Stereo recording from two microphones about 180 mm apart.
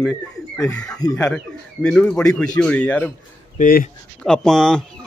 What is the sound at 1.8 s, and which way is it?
A man's voice, 5° left (ahead or behind).